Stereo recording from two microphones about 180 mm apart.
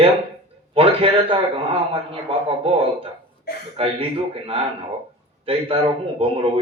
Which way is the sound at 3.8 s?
30° right (ahead or behind).